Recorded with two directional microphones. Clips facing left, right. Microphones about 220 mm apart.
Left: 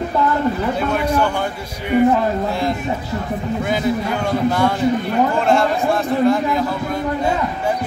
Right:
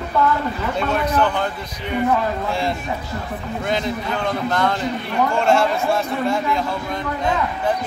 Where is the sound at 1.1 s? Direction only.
10° left (ahead or behind).